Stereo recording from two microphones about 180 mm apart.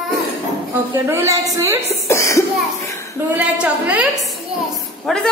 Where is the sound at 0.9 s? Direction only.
15° right (ahead or behind).